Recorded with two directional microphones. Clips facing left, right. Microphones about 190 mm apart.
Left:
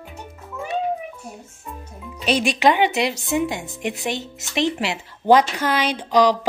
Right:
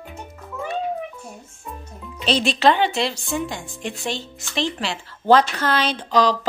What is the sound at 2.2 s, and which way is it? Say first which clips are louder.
A woman's voice: even; 10° left (ahead or behind).